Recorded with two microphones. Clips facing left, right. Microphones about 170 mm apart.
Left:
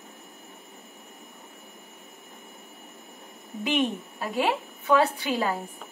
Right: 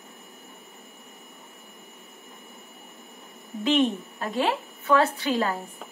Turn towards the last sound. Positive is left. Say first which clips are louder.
# right 1 dB
turn(degrees=10)  # may be behind; listen again after turning